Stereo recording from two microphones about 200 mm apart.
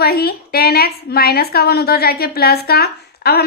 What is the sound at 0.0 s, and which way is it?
A woman's voice, 50° left (ahead or behind).